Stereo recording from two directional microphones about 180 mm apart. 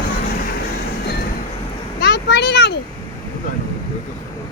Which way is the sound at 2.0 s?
70° left (ahead or behind).